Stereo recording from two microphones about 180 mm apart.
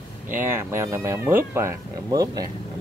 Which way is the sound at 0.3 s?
10° right (ahead or behind).